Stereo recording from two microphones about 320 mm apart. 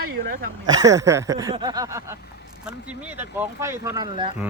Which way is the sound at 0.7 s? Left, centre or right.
Centre.